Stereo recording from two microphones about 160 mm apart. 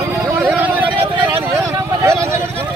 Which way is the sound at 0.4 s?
5° right (ahead or behind).